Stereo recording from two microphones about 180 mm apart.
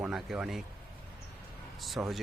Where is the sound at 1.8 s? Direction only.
Centre (ahead or behind).